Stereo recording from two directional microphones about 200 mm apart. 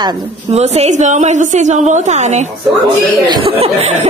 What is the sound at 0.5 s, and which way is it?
A woman's voice, 35° right (ahead or behind).